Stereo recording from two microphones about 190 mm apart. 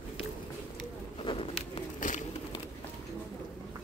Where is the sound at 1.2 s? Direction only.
30° left (ahead or behind).